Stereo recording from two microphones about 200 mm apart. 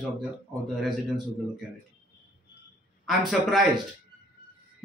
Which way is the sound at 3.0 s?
Centre (ahead or behind).